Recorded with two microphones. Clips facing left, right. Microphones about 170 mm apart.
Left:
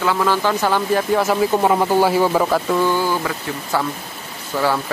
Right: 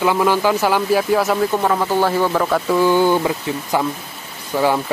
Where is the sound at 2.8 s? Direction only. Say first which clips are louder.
Right 5 dB; 20° right (ahead or behind).